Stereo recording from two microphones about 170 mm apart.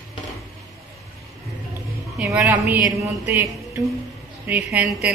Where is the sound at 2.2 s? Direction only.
5° right (ahead or behind).